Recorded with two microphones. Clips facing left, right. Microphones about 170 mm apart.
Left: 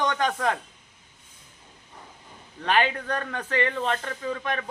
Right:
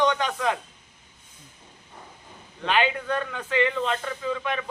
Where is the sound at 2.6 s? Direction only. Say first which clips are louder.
Even; 45° left (ahead or behind).